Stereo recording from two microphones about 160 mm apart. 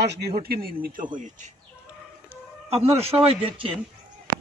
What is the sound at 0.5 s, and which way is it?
Speech, 70° right (ahead or behind).